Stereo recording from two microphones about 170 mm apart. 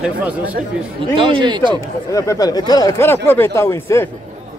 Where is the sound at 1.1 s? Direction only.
30° right (ahead or behind).